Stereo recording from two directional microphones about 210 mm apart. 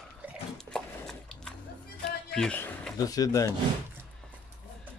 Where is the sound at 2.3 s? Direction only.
5° left (ahead or behind).